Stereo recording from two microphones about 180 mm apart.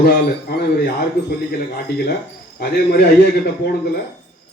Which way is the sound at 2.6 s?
65° left (ahead or behind).